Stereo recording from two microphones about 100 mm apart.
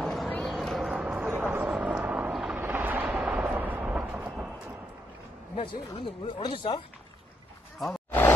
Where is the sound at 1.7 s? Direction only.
15° right (ahead or behind).